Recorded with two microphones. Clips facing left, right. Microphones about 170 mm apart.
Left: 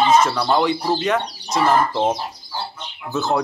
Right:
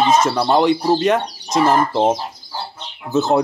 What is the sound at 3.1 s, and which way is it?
Speech, 25° right (ahead or behind).